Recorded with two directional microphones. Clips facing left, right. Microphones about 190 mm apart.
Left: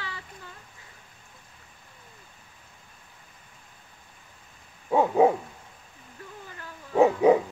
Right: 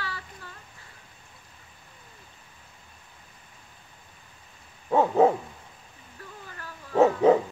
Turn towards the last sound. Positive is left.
turn(degrees=10)  # may be behind; listen again after turning